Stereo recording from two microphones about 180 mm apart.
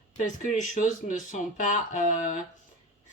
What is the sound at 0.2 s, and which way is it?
A woman's voice, 40° left (ahead or behind).